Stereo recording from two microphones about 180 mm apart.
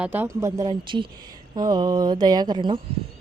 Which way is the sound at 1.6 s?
20° right (ahead or behind).